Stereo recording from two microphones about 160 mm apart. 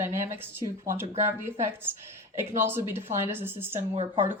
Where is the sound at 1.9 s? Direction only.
15° right (ahead or behind).